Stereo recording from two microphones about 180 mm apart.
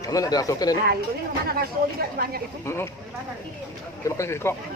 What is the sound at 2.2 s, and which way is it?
Speech, 55° right (ahead or behind).